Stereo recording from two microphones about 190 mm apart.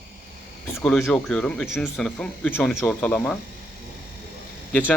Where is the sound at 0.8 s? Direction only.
5° left (ahead or behind).